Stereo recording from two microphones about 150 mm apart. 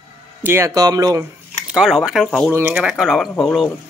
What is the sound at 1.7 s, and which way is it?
Speech, 5° right (ahead or behind).